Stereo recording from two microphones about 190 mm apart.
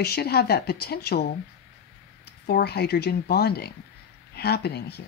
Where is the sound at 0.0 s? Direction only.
55° left (ahead or behind).